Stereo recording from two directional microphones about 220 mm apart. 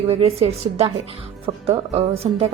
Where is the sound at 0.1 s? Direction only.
25° right (ahead or behind).